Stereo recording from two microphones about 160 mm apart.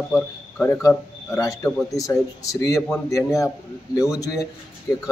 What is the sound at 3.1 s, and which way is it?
Speech, 20° left (ahead or behind).